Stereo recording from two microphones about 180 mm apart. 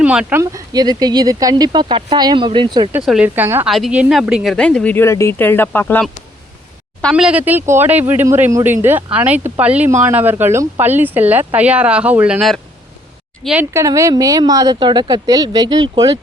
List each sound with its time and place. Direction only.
0.0 s speech: 5° right (ahead or behind); by 2.9 s 25° right (ahead or behind)
3.1 s speech: 10° right (ahead or behind)
3.7 s speech: centre (ahead or behind)
13.7 s speech: 15° right (ahead or behind)